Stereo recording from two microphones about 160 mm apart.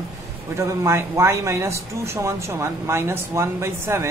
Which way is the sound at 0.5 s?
15° right (ahead or behind).